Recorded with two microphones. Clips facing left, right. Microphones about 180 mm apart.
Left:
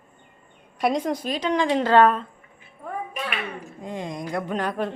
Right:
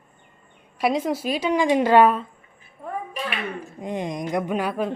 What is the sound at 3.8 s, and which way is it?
Speech, 20° right (ahead or behind).